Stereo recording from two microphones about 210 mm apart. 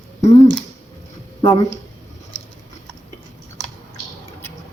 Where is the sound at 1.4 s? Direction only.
15° left (ahead or behind).